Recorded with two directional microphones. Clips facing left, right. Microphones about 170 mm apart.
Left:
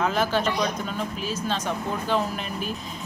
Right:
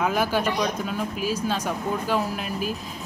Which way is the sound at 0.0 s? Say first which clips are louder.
Even; 10° right (ahead or behind).